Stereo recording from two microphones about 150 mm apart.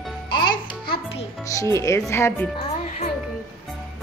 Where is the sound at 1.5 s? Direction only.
20° left (ahead or behind).